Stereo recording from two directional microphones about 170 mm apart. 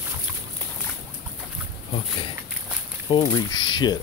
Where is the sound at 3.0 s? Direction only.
25° left (ahead or behind).